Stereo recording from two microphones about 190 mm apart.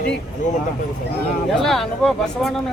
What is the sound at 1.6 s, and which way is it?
Speech, centre (ahead or behind).